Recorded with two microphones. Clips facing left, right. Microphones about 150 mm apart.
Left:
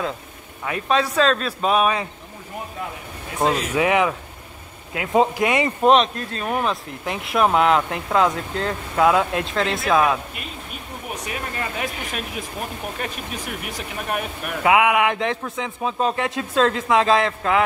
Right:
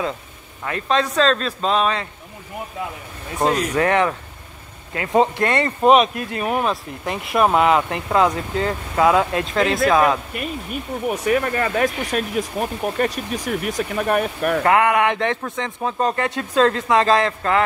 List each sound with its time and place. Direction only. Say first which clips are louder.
0.7 s a man's voice: even; 5° left (ahead or behind)
3.3 s speech: right 1 dB; 5° left (ahead or behind)
5.9 s speech: right 2 dB; 10° right (ahead or behind)
11.2 s speech: right 10 dB; 60° right (ahead or behind)
14.6 s speech: left 1 dB; 5° left (ahead or behind)